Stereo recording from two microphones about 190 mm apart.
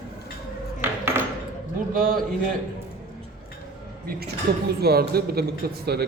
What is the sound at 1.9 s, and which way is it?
Speech, 50° right (ahead or behind).